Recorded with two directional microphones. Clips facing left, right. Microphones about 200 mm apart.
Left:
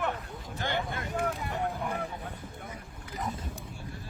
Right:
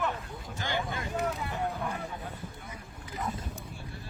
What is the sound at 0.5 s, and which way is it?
Speech, 60° left (ahead or behind).